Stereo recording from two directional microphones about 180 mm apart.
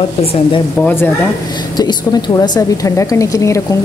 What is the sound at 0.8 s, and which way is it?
Speech, 10° left (ahead or behind).